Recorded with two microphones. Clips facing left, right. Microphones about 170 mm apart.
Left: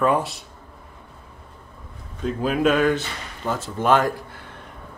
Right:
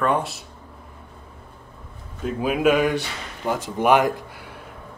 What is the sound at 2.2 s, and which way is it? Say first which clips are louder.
Speech: even; 10° right (ahead or behind).